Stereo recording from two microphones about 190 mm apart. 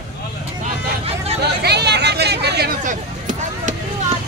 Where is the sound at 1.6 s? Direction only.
60° right (ahead or behind); by 3.7 s 45° right (ahead or behind).